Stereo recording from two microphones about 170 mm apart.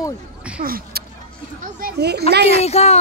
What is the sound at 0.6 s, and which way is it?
Speech, 60° right (ahead or behind).